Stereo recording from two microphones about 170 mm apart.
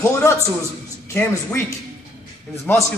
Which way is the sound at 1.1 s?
15° left (ahead or behind).